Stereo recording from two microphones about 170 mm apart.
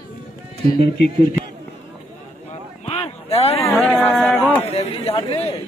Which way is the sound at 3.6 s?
15° left (ahead or behind).